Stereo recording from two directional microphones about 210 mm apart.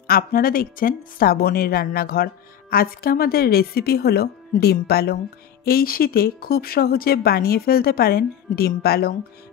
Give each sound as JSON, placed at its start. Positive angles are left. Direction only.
{"t": 0.0, "sound": "a woman's voice", "side_deg": 45}